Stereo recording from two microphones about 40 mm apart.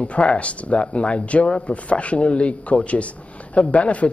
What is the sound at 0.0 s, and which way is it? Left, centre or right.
A man's voice, left.